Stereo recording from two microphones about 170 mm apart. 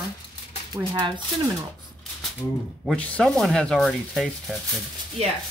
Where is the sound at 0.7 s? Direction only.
25° right (ahead or behind).